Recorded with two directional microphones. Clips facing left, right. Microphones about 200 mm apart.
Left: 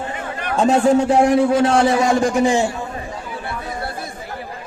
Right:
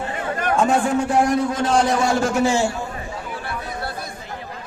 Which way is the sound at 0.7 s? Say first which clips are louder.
Left 5 dB; 25° left (ahead or behind).